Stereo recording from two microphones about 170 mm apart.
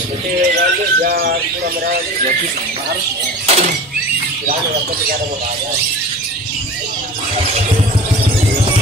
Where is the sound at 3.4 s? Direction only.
35° right (ahead or behind).